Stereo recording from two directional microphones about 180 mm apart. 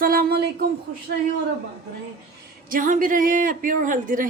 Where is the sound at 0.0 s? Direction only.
55° right (ahead or behind).